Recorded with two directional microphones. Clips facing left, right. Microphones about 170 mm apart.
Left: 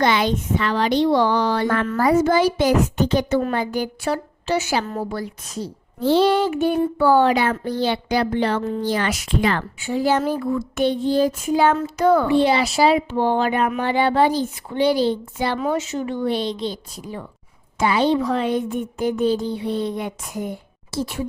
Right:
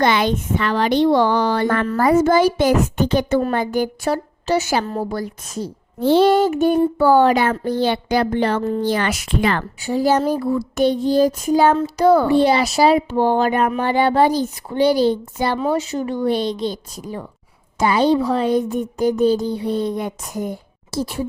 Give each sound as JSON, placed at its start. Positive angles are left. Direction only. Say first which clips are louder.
{"t": 0.0, "sound": "a child's voice", "louder": "right 2 dB", "side_deg": -55}
{"t": 8.8, "sound": "speech", "louder": "right 2 dB", "side_deg": -60}
{"t": 9.8, "sound": "speech", "louder": "right 3 dB", "side_deg": -40}